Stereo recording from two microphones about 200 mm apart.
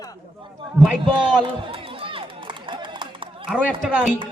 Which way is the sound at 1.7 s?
25° right (ahead or behind).